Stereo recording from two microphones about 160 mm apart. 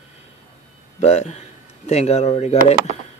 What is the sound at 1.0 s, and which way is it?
A man's voice, 45° left (ahead or behind).